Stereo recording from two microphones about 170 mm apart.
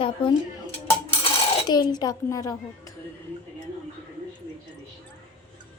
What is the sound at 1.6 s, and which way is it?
A child's voice, 25° left (ahead or behind).